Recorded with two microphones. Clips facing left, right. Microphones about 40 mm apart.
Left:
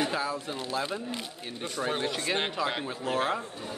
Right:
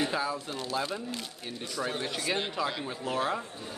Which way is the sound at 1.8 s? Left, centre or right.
Left.